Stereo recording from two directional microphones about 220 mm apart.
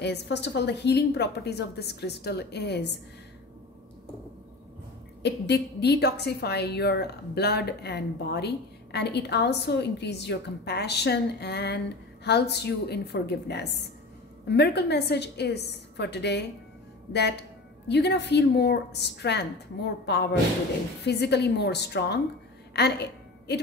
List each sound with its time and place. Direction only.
0.0 s a woman's voice: 50° left (ahead or behind)
5.2 s a woman's voice: 50° left (ahead or behind)
22.7 s a sound: 50° left (ahead or behind)